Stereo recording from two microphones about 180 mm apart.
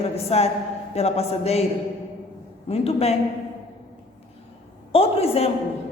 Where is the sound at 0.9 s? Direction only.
35° left (ahead or behind).